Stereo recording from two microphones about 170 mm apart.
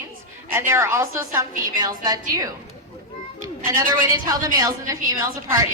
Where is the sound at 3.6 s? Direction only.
20° right (ahead or behind).